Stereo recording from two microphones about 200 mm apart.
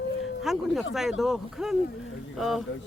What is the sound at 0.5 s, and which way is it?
Speech, centre (ahead or behind).